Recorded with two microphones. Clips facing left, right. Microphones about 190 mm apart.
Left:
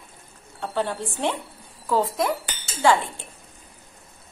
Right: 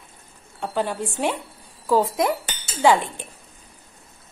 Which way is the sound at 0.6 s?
10° right (ahead or behind).